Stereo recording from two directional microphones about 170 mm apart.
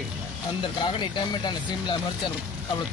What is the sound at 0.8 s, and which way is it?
Speech, 30° left (ahead or behind).